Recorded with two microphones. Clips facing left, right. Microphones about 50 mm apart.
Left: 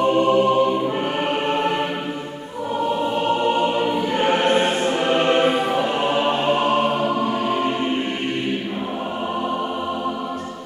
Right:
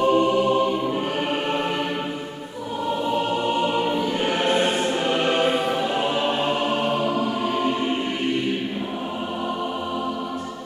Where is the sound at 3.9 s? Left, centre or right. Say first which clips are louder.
Left 3 dB; left.